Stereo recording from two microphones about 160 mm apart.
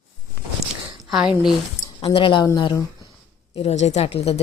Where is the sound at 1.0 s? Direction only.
Centre (ahead or behind).